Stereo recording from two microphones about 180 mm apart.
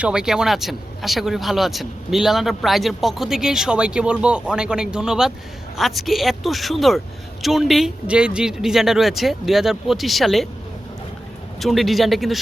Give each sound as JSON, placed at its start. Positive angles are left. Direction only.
{"t": 0.0, "sound": "speech", "side_deg": -5}
{"t": 11.6, "sound": "speech", "side_deg": 0}